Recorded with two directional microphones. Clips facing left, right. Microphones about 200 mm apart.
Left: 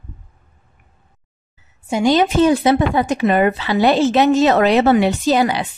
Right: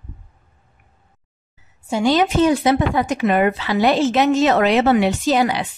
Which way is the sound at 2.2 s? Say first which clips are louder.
Left 2 dB; 30° left (ahead or behind).